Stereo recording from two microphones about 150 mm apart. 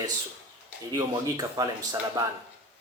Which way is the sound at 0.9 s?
25° right (ahead or behind).